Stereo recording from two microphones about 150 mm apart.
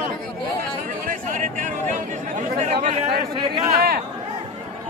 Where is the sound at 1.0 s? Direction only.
65° right (ahead or behind); by 3.0 s 45° right (ahead or behind).